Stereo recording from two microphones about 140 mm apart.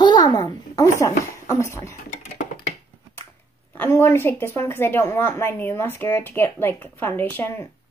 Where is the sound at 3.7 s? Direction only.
15° left (ahead or behind).